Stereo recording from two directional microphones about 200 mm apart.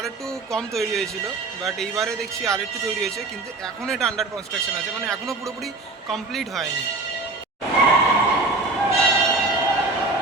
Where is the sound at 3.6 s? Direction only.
5° left (ahead or behind).